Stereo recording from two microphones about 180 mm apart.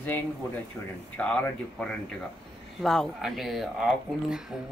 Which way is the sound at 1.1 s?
5° left (ahead or behind).